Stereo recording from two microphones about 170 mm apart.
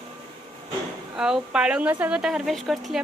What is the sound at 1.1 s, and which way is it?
Speech, 5° right (ahead or behind).